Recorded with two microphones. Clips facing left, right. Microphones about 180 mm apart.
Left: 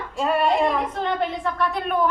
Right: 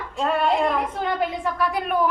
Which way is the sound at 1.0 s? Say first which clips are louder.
Even; 10° right (ahead or behind).